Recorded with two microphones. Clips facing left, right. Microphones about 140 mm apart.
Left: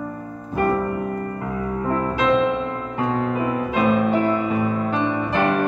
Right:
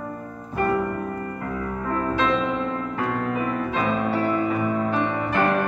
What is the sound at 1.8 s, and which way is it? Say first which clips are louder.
Music: left 3 dB; 20° left (ahead or behind).